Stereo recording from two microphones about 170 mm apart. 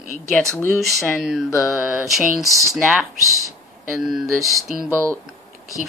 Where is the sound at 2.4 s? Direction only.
20° right (ahead or behind).